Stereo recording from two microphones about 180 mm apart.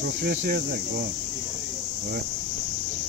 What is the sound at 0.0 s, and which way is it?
Speech, 65° right (ahead or behind).